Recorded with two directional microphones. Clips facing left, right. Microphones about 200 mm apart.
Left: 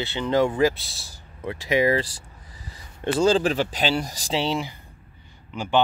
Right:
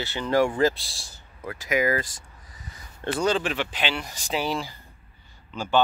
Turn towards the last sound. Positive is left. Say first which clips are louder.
# left 1 dB
turn(degrees=15)  # may be behind; listen again after turning